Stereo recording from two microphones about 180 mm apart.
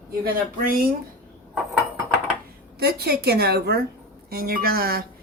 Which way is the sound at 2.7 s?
60° right (ahead or behind).